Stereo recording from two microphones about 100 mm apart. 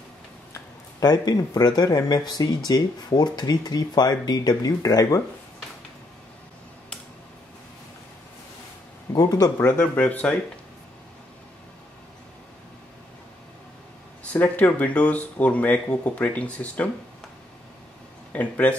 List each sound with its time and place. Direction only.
0.9 s speech: 40° left (ahead or behind)
9.1 s speech: 40° left (ahead or behind)
9.6 s speech: 15° left (ahead or behind)
14.3 s speech: 15° left (ahead or behind)
18.3 s speech: 15° left (ahead or behind)